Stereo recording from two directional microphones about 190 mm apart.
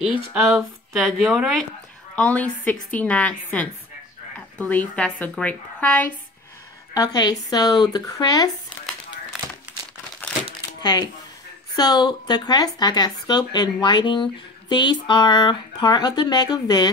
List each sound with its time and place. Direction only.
0.3 s speech: 15° right (ahead or behind)
0.9 s a woman's voice: centre (ahead or behind)
6.9 s speech: 20° left (ahead or behind)
10.8 s speech: 20° left (ahead or behind)